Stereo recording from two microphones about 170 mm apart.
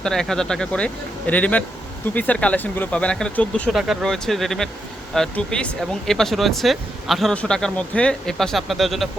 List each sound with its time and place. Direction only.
0.0 s a man's voice: 5° left (ahead or behind)